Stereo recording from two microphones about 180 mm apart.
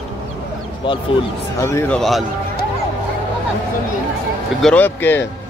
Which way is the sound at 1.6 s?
15° left (ahead or behind).